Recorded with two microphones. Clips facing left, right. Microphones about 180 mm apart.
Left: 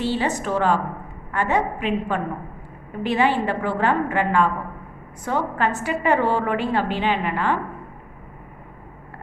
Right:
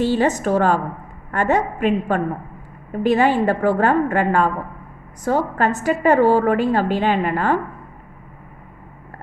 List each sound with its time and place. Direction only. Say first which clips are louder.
0.0 s a woman's voice: right 5 dB; 45° right (ahead or behind)